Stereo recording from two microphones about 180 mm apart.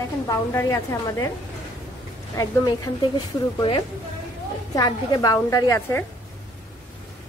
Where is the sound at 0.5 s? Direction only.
15° left (ahead or behind).